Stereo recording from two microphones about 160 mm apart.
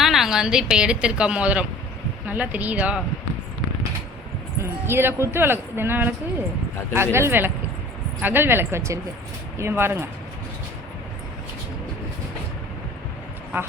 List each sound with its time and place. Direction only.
0.0 s a woman's voice: centre (ahead or behind)
4.9 s speech: 15° right (ahead or behind)
13.5 s speech: 15° right (ahead or behind)